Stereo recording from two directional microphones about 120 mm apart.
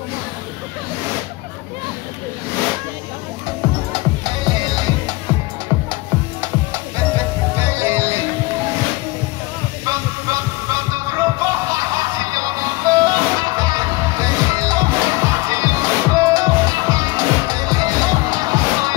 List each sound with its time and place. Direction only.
3.9 s music: 45° right (ahead or behind)
6.4 s music: 25° right (ahead or behind)
9.8 s music: 25° right (ahead or behind)